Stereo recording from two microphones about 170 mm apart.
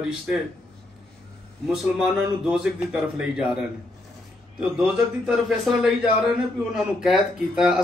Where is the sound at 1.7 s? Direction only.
5° right (ahead or behind).